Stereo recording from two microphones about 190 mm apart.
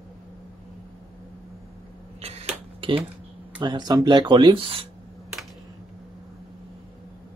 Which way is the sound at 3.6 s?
20° right (ahead or behind).